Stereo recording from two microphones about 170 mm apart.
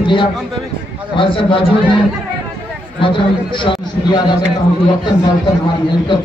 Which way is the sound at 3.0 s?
30° left (ahead or behind).